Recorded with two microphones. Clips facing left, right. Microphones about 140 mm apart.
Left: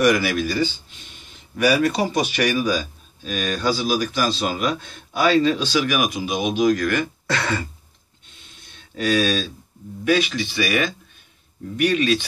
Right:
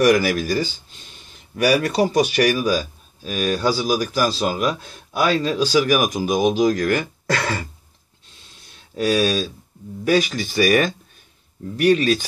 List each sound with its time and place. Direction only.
0.0 s a man's voice: 40° right (ahead or behind)
1.8 s a man's voice: 40° right (ahead or behind)
9.0 s a man's voice: 35° right (ahead or behind)